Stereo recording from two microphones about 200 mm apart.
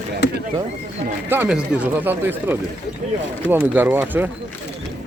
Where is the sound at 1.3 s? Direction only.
10° right (ahead or behind).